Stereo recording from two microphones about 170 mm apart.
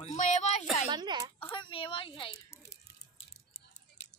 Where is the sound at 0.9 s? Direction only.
25° right (ahead or behind).